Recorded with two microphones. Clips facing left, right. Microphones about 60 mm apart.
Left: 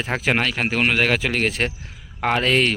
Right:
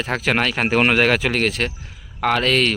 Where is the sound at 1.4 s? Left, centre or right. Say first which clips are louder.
Right 1 dB; left.